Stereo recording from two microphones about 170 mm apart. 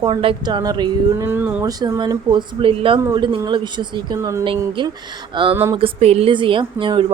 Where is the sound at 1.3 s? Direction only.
10° right (ahead or behind).